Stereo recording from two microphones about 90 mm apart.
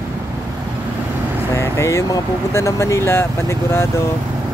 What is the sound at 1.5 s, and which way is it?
Speech, 35° left (ahead or behind).